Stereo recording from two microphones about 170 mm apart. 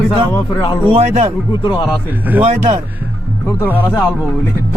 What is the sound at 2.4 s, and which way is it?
Speech, 40° right (ahead or behind).